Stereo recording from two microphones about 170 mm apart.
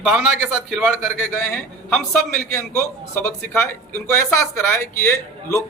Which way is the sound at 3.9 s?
15° left (ahead or behind).